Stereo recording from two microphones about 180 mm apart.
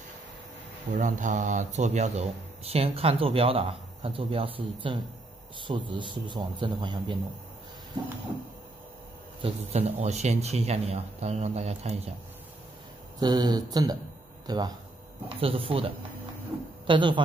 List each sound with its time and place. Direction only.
0.9 s a man's voice: 45° right (ahead or behind); by 7.2 s 25° right (ahead or behind)
9.4 s speech: 35° right (ahead or behind)
13.2 s a man's voice: 20° right (ahead or behind)